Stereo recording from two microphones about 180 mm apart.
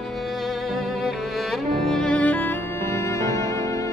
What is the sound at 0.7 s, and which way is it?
Music, centre (ahead or behind).